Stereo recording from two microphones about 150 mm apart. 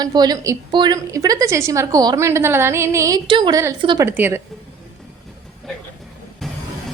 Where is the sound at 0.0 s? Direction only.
25° right (ahead or behind).